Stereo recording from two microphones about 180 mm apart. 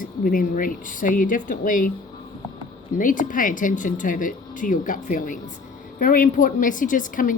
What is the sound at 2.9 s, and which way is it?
A woman's voice, 50° left (ahead or behind).